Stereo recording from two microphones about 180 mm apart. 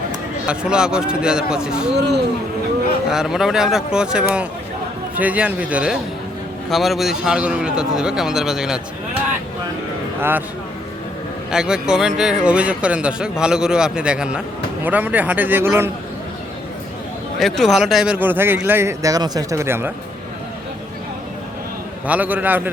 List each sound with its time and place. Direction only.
0.4 s a man's voice: 5° right (ahead or behind)
1.9 s speech: 70° right (ahead or behind)
3.1 s a man's voice: centre (ahead or behind)
10.2 s speech: 10° right (ahead or behind)
11.5 s a man's voice: 5° right (ahead or behind)
17.4 s speech: centre (ahead or behind)
22.0 s speech: 10° right (ahead or behind)